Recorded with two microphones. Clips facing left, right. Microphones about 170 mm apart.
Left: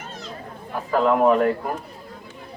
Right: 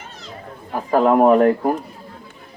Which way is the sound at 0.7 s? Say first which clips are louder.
Right 4 dB; 45° right (ahead or behind).